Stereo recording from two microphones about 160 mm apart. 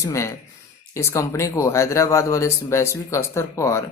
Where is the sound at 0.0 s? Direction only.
20° left (ahead or behind).